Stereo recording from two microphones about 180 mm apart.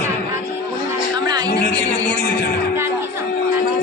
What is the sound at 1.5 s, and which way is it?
A man's voice, 70° left (ahead or behind).